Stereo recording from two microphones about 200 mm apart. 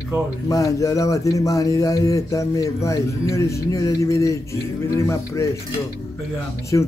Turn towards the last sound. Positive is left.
turn(degrees=15)  # may be behind; listen again after turning